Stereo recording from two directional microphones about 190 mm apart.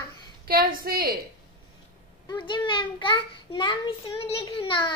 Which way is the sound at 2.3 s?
25° left (ahead or behind).